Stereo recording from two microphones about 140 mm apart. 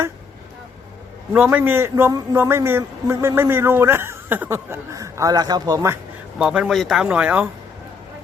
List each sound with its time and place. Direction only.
1.3 s a man's voice: 10° right (ahead or behind)
6.4 s a man's voice: 5° right (ahead or behind)